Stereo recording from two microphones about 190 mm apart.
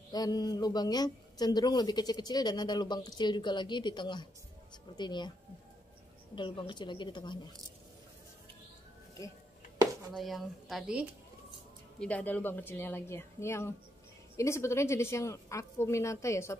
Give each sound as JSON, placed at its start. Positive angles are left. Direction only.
{"t": 0.1, "sound": "a woman's voice", "side_deg": 20}
{"t": 6.3, "sound": "a woman's voice", "side_deg": 25}
{"t": 10.1, "sound": "a woman's voice", "side_deg": 0}
{"t": 12.0, "sound": "a woman's voice", "side_deg": 5}